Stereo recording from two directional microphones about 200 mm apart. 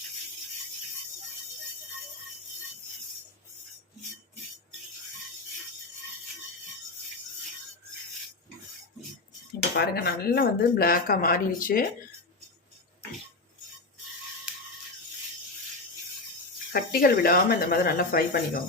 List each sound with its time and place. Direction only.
9.7 s speech: 55° left (ahead or behind)
16.7 s speech: 50° left (ahead or behind)